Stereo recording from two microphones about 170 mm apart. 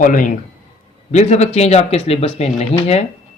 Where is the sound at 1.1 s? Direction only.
40° left (ahead or behind).